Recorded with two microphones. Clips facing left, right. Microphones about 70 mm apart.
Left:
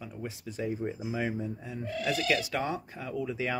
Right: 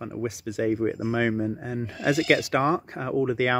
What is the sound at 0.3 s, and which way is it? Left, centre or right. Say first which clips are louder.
Speech: right 8 dB; right.